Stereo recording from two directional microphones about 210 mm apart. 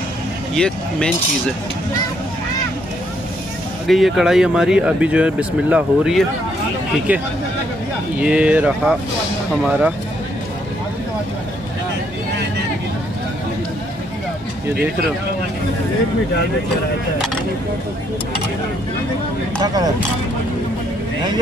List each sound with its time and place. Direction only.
0.6 s speech: 5° left (ahead or behind)
3.8 s speech: centre (ahead or behind)
19.6 s speech: 15° right (ahead or behind)